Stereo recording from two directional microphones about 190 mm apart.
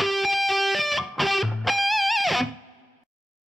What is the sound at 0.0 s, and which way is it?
Music, centre (ahead or behind).